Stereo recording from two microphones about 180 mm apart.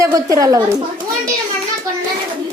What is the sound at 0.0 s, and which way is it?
Speech, 20° right (ahead or behind).